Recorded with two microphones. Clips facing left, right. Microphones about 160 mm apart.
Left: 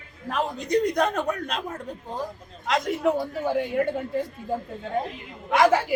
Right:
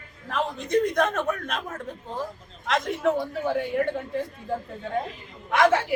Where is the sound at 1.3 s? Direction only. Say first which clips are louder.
Left 1 dB; 15° left (ahead or behind).